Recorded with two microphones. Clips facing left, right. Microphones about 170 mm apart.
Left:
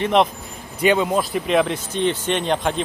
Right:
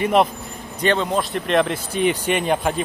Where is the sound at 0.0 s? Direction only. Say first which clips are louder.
Even; 5° right (ahead or behind).